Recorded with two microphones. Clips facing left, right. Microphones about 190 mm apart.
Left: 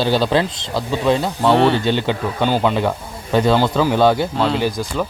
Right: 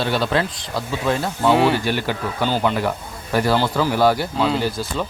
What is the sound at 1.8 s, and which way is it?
Speech, 25° left (ahead or behind).